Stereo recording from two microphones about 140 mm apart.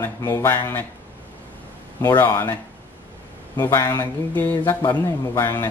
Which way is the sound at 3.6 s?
20° left (ahead or behind).